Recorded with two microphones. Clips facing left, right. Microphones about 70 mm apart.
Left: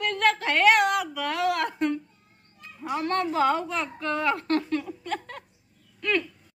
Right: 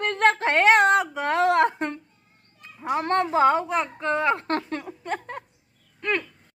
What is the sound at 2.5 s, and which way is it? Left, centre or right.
Cat, right.